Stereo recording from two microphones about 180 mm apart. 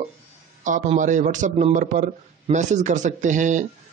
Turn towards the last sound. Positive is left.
turn(degrees=-45)  # may be behind; listen again after turning